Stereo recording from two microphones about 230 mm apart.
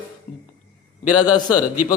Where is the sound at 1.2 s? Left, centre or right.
Centre.